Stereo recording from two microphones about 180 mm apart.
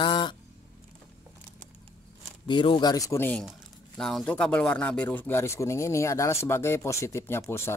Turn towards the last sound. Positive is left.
turn(degrees=15)  # may be behind; listen again after turning